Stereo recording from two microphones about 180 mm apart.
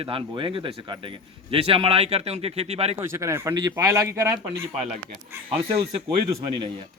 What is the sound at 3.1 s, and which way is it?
A man's voice, 15° right (ahead or behind).